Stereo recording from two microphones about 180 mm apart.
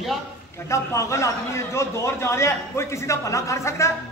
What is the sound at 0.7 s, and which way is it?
A man's voice, 15° left (ahead or behind).